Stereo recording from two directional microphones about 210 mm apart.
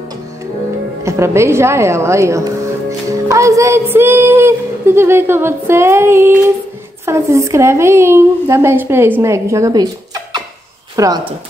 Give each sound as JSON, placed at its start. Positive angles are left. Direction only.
{"t": 1.0, "sound": "a woman's voice", "side_deg": -15}